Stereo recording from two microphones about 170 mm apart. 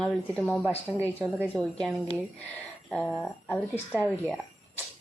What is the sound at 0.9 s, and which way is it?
Speech, 5° right (ahead or behind).